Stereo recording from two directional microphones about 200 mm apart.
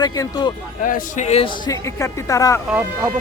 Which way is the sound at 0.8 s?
40° left (ahead or behind).